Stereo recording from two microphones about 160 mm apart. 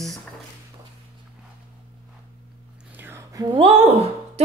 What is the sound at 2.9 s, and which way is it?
Whispering, 15° right (ahead or behind).